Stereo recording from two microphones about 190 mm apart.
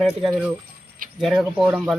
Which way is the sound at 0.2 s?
Centre (ahead or behind).